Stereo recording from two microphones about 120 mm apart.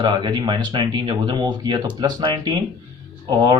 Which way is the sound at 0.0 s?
40° right (ahead or behind).